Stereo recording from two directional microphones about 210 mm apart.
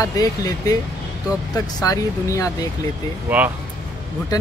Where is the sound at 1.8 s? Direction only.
15° left (ahead or behind).